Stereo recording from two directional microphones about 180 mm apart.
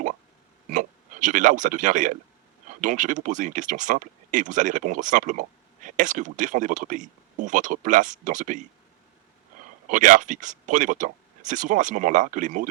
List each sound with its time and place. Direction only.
0.7 s speech: 45° right (ahead or behind)
9.8 s speech: 45° right (ahead or behind)